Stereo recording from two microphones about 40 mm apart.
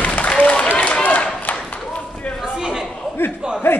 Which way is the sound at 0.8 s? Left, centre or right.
Left.